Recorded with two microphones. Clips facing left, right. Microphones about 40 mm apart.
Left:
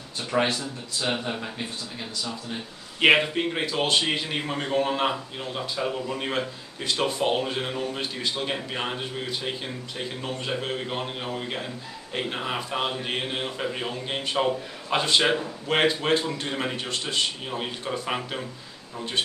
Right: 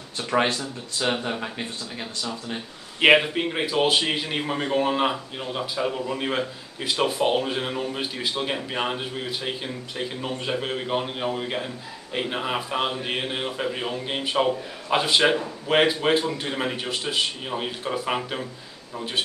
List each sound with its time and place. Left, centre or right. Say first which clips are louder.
0.3 s speech: right 2 dB; right
3.0 s a man's voice: right 2 dB; centre